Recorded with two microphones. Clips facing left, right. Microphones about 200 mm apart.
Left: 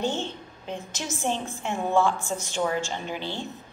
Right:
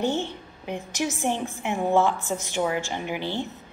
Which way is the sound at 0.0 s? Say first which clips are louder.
Right 3 dB; 15° right (ahead or behind).